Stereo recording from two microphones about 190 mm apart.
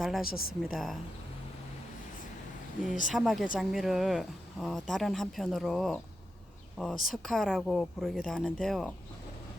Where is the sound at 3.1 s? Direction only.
Centre (ahead or behind).